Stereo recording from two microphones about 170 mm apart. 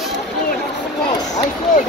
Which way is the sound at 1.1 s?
20° left (ahead or behind).